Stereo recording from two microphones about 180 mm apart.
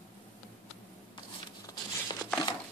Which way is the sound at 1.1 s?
25° left (ahead or behind).